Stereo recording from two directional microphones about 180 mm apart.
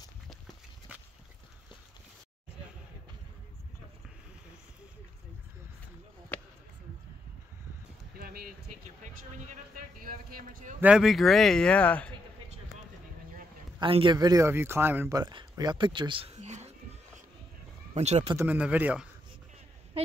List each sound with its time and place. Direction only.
6.3 s a sound: 10° left (ahead or behind)
8.2 s speech: 55° right (ahead or behind)
10.8 s speech: 5° right (ahead or behind)
13.7 s speech: 30° right (ahead or behind)
17.9 s speech: 35° right (ahead or behind)
18.3 s speech: 10° right (ahead or behind)